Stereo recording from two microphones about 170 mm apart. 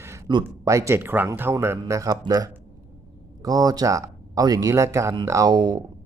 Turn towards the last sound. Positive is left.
turn(degrees=-25)  # may be behind; listen again after turning